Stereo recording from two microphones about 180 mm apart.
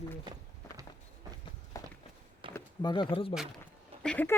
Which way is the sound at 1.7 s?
20° left (ahead or behind).